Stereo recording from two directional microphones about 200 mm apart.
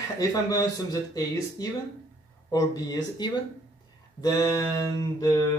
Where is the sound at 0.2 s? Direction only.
15° left (ahead or behind).